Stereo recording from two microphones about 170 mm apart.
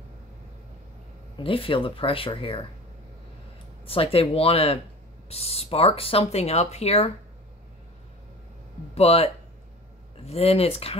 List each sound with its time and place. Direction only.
1.4 s speech: 30° left (ahead or behind)
3.8 s speech: 35° left (ahead or behind)
8.9 s speech: 35° left (ahead or behind)